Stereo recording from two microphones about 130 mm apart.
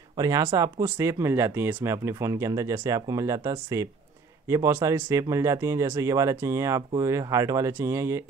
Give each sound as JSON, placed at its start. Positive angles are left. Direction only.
{"t": 0.2, "sound": "speech", "side_deg": -25}